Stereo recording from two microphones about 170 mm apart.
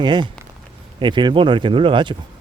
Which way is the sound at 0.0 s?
25° right (ahead or behind).